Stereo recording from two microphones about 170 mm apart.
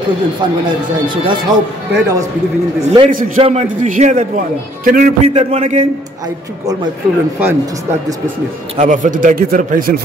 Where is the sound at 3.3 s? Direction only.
40° right (ahead or behind).